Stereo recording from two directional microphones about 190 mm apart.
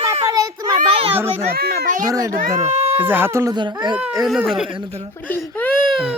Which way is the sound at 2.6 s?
35° right (ahead or behind).